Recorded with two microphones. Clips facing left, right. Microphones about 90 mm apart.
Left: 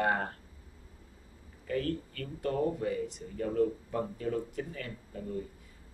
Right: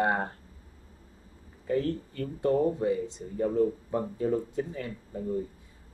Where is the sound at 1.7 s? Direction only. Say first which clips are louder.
Right 4 dB; 25° right (ahead or behind).